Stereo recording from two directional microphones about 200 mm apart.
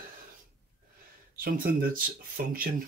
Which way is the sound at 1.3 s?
45° right (ahead or behind).